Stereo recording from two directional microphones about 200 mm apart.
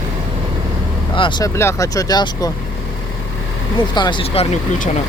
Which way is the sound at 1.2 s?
20° left (ahead or behind).